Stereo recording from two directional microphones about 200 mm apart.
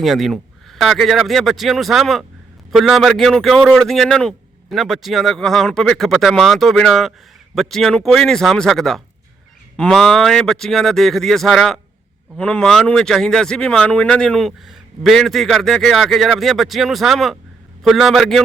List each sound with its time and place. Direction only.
0.0 s speech: centre (ahead or behind)